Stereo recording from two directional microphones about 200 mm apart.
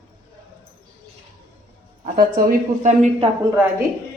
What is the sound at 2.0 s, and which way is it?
Speech, 40° right (ahead or behind).